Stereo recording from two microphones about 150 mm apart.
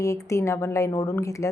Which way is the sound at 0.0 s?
20° left (ahead or behind).